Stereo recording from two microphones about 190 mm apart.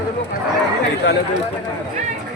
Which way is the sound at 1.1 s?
70° left (ahead or behind).